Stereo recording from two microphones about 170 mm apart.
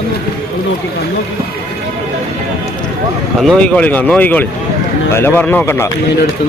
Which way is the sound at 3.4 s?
5° left (ahead or behind).